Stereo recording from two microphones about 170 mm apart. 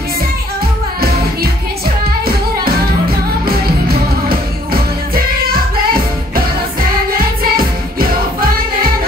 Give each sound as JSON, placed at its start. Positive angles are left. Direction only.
{"t": 2.6, "sound": "music", "side_deg": -60}
{"t": 7.1, "sound": "music", "side_deg": -60}